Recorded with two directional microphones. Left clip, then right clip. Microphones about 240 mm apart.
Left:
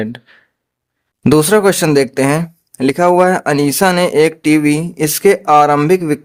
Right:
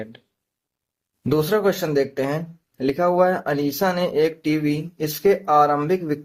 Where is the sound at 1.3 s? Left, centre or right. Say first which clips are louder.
Left 9 dB; left.